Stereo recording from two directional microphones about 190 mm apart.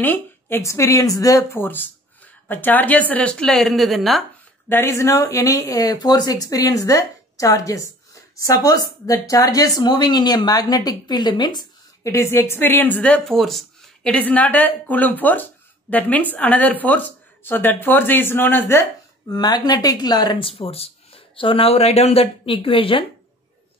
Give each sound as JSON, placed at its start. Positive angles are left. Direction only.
{"t": 0.0, "sound": "speech", "side_deg": 10}
{"t": 4.6, "sound": "speech", "side_deg": 10}